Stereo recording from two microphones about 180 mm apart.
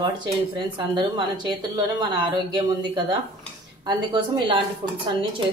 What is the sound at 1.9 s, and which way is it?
Speech, 25° right (ahead or behind).